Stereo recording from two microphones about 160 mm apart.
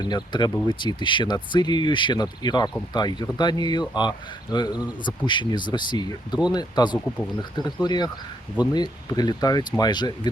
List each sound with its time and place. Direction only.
0.0 s speech: 25° left (ahead or behind)